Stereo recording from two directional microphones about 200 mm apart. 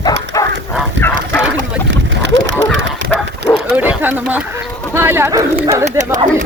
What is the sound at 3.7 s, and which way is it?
Speech, 10° right (ahead or behind).